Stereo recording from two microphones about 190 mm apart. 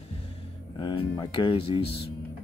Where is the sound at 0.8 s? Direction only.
25° left (ahead or behind).